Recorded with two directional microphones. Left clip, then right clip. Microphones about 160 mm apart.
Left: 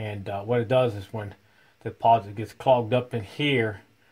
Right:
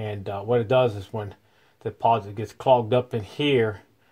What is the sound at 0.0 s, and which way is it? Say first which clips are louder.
Speech: right 2 dB; 35° right (ahead or behind).